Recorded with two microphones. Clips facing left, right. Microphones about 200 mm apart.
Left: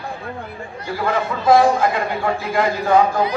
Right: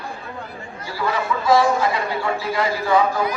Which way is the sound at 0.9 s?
50° left (ahead or behind).